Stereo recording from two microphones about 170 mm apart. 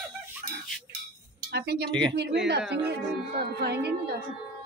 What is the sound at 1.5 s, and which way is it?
Speech, 70° right (ahead or behind).